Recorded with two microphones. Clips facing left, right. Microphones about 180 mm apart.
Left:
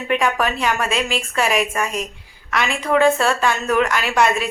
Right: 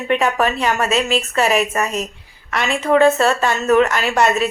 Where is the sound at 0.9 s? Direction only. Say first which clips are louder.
Right 4 dB; 40° right (ahead or behind).